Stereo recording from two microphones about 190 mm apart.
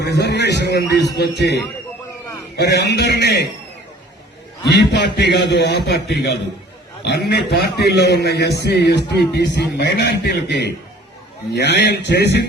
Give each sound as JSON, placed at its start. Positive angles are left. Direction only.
{"t": 0.0, "sound": "a man's voice", "side_deg": 60}
{"t": 2.6, "sound": "a man's voice", "side_deg": 65}
{"t": 4.6, "sound": "a man's voice", "side_deg": 60}